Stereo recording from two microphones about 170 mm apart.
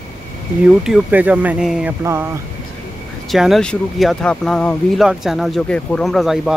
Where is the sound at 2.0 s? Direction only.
15° right (ahead or behind).